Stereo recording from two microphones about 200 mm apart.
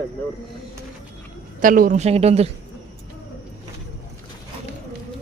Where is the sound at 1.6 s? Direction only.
40° right (ahead or behind).